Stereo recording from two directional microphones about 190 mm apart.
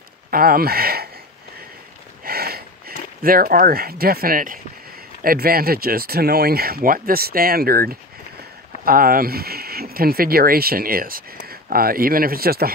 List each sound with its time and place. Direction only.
0.3 s speech: 50° right (ahead or behind)
2.2 s a sound: 55° right (ahead or behind)
5.2 s speech: 50° right (ahead or behind)